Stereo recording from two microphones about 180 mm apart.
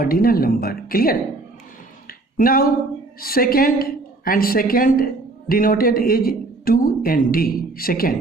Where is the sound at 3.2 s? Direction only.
55° left (ahead or behind).